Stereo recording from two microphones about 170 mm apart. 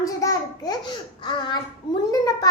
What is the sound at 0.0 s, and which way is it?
A child's voice, 20° left (ahead or behind).